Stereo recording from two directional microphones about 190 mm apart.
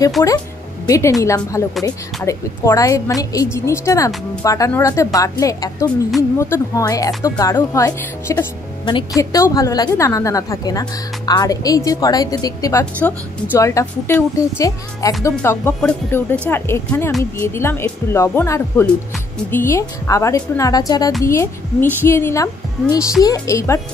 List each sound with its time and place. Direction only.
0.8 s a woman's voice: 15° left (ahead or behind)